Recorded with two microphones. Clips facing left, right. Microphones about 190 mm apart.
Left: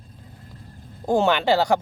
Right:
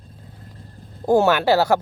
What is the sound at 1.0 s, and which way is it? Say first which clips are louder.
Speech: right 3 dB; 5° right (ahead or behind).